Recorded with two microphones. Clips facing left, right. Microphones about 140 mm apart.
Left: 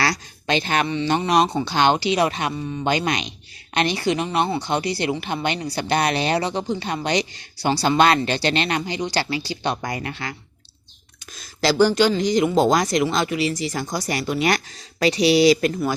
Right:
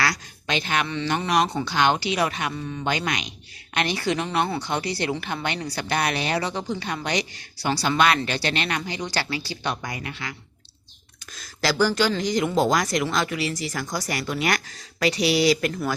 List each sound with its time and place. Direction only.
0.0 s a sound: 30° left (ahead or behind)
0.9 s speech: 20° left (ahead or behind)
2.6 s speech: 15° left (ahead or behind)
2.9 s speech: 30° left (ahead or behind)
9.8 s speech: 40° left (ahead or behind)
11.6 s speech: 25° left (ahead or behind)